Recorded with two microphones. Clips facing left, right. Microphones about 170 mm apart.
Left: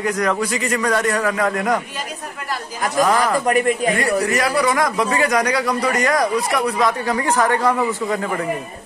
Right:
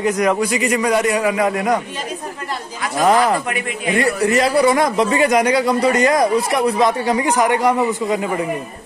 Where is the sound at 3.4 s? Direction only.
40° left (ahead or behind).